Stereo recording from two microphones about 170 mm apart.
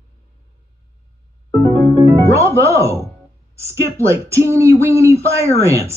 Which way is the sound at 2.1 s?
15° right (ahead or behind).